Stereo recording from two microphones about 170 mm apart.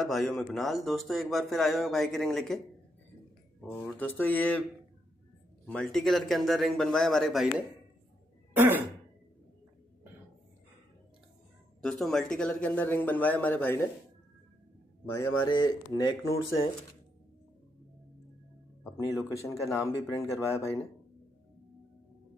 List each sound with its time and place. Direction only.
0.0 s speech: centre (ahead or behind)
3.8 s speech: 10° left (ahead or behind)
5.7 s speech: 5° left (ahead or behind)
8.5 s throat clearing: 10° right (ahead or behind)
11.8 s speech: centre (ahead or behind)
15.1 s speech: 25° left (ahead or behind)
19.2 s speech: 20° left (ahead or behind)